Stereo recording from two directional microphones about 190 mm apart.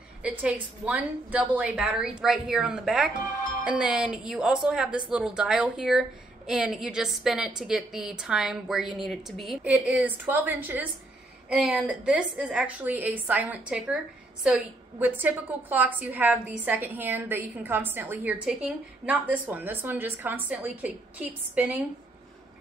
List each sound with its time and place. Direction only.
0.2 s a woman's voice: 5° right (ahead or behind)